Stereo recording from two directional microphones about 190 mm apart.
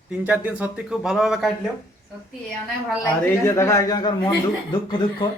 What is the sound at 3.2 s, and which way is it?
A man's voice, 15° left (ahead or behind).